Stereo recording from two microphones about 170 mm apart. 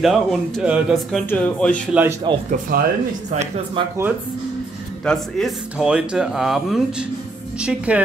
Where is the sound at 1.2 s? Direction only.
10° left (ahead or behind).